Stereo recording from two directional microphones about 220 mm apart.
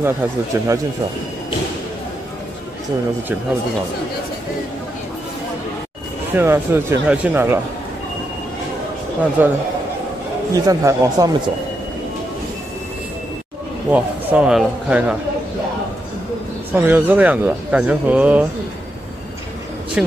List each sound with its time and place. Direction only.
0.0 s speech: 15° right (ahead or behind)
6.3 s speech: 10° right (ahead or behind)
9.4 s speech: 10° right (ahead or behind)
13.8 s speech: 5° right (ahead or behind)
16.7 s speech: 10° right (ahead or behind)
20.0 s speech: 5° right (ahead or behind)